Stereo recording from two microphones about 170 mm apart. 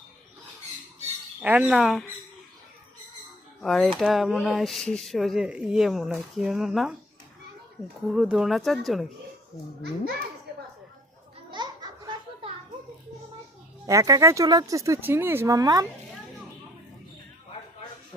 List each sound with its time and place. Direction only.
1.4 s speech: 10° right (ahead or behind)
3.6 s speech: centre (ahead or behind)
8.0 s speech: 5° right (ahead or behind)
11.5 s baby laughter: 25° right (ahead or behind)
13.8 s speech: 20° right (ahead or behind)